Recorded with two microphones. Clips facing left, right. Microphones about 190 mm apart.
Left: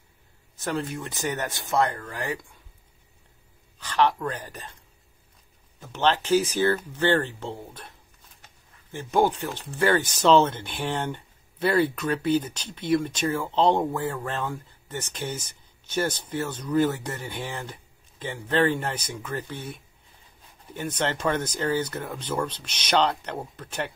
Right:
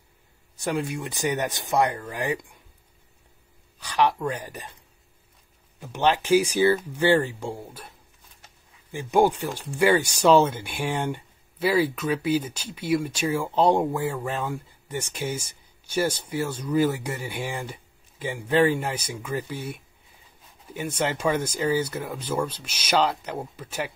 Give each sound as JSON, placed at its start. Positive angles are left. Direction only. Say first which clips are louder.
{"t": 0.6, "sound": "speech", "louder": "right 2 dB", "side_deg": -15}
{"t": 3.8, "sound": "speech", "louder": "even", "side_deg": -10}
{"t": 5.8, "sound": "speech", "louder": "right 1 dB", "side_deg": -15}
{"t": 8.9, "sound": "speech", "louder": "right 2 dB", "side_deg": -10}